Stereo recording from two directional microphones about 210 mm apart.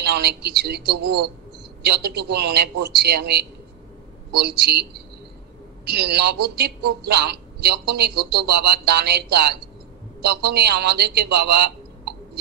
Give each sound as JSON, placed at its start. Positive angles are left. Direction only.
{"t": 0.0, "sound": "a man's voice", "side_deg": -50}